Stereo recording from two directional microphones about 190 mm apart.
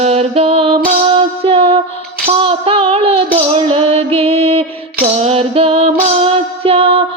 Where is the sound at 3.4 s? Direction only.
30° right (ahead or behind).